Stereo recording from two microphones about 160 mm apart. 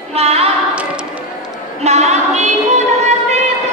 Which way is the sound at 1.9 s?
45° right (ahead or behind).